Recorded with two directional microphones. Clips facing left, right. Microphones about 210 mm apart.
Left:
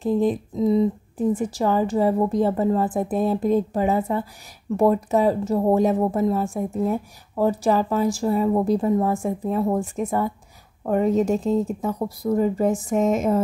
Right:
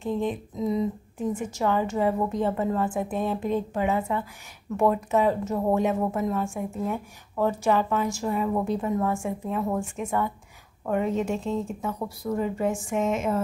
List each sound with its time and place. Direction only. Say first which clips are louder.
0.0 s speech: left 7 dB; 35° left (ahead or behind)